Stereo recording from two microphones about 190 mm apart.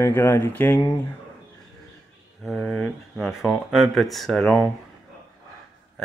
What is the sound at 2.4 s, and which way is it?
Speech, centre (ahead or behind).